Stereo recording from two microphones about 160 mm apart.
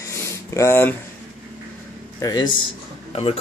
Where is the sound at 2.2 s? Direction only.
25° left (ahead or behind).